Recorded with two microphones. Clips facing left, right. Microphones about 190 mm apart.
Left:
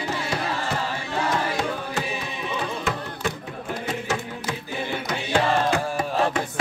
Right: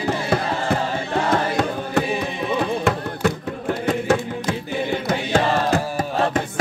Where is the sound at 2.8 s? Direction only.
65° right (ahead or behind).